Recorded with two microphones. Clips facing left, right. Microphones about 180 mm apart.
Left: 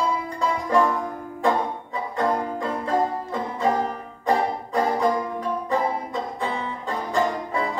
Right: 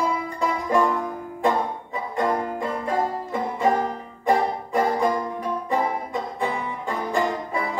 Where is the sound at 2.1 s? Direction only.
15° right (ahead or behind).